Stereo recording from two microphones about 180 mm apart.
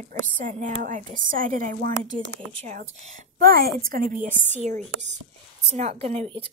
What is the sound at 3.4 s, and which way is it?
A woman's voice, 55° right (ahead or behind).